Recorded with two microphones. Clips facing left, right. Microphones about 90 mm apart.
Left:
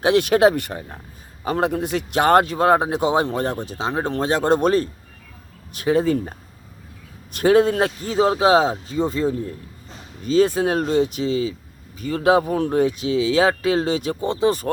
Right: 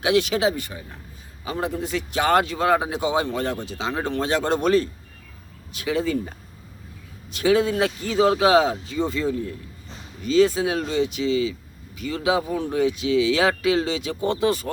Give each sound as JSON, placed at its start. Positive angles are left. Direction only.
{"t": 0.0, "sound": "a man's voice", "side_deg": 45}
{"t": 7.3, "sound": "a man's voice", "side_deg": 50}
{"t": 14.2, "sound": "a man's voice", "side_deg": 30}